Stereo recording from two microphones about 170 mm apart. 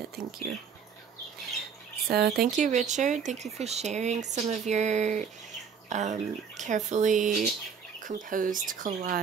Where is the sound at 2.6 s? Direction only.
45° right (ahead or behind).